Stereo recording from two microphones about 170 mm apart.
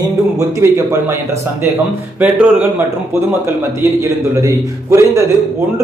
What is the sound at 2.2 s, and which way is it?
Speech, 10° right (ahead or behind).